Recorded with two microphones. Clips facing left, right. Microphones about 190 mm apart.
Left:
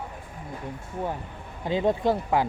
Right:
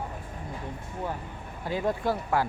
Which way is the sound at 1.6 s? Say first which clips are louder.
Left 4 dB; 25° left (ahead or behind).